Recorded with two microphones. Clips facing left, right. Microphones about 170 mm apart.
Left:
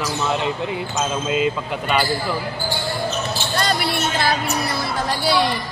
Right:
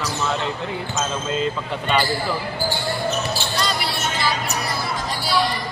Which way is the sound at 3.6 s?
55° left (ahead or behind).